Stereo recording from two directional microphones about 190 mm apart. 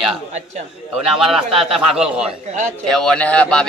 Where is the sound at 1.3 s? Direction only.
Centre (ahead or behind).